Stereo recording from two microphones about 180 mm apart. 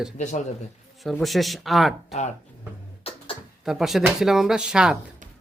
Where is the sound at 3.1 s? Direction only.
35° left (ahead or behind).